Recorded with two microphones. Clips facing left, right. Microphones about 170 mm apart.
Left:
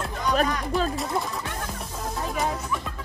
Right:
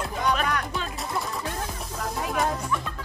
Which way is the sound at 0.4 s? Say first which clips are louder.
Left 4 dB; 40° left (ahead or behind).